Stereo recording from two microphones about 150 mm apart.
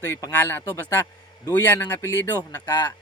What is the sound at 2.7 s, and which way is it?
Speech, 25° left (ahead or behind).